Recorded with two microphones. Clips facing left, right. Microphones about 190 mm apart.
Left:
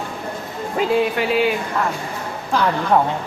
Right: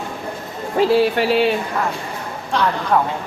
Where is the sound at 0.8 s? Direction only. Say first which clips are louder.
Right 3 dB; 35° right (ahead or behind).